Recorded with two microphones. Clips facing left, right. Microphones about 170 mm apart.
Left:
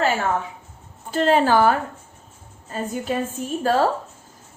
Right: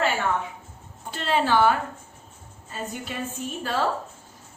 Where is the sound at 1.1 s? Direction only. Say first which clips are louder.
Left 6 dB; 45° left (ahead or behind).